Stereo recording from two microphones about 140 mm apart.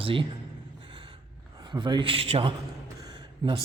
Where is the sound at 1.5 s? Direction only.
30° right (ahead or behind).